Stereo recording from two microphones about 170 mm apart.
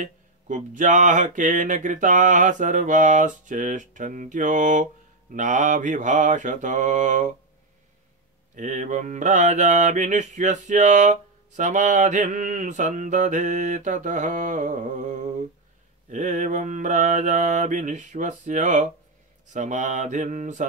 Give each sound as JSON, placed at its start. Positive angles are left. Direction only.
{"t": 0.0, "sound": "mantra", "side_deg": -45}
{"t": 8.5, "sound": "mantra", "side_deg": -45}